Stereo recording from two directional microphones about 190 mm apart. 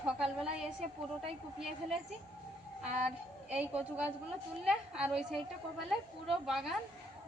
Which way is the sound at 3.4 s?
5° right (ahead or behind).